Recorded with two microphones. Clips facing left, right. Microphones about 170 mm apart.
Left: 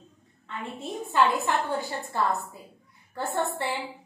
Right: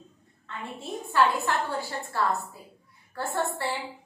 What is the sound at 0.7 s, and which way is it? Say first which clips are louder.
A woman's voice: even; 20° left (ahead or behind).